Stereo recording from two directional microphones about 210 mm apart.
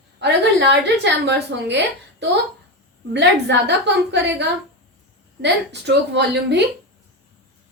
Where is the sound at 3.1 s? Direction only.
55° right (ahead or behind).